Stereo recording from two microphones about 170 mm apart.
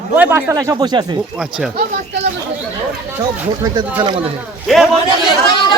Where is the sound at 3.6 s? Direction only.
25° right (ahead or behind).